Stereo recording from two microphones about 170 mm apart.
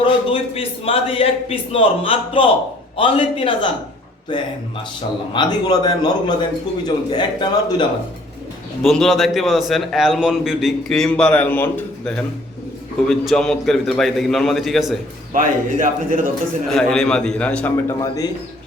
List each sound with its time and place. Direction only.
0.0 s a man's voice: 30° left (ahead or behind)
8.8 s a man's voice: centre (ahead or behind)
15.3 s a man's voice: 50° right (ahead or behind)
16.6 s a man's voice: 5° left (ahead or behind)